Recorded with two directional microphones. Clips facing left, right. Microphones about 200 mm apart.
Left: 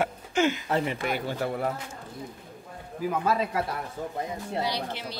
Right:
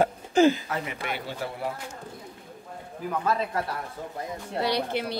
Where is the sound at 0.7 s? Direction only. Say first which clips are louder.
Left 5 dB; 30° left (ahead or behind).